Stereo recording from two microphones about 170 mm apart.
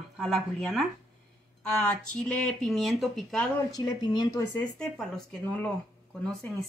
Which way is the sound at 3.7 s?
25° left (ahead or behind).